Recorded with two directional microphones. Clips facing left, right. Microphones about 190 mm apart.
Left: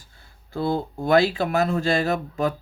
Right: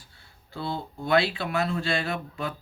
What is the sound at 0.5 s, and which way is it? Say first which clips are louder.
Speech: left 8 dB; 45° left (ahead or behind).